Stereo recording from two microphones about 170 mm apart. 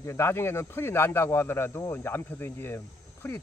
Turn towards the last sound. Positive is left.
turn(degrees=15)  # may be behind; listen again after turning